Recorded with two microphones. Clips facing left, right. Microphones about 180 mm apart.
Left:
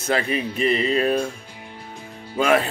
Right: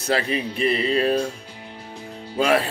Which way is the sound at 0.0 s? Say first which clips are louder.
Even; 35° right (ahead or behind).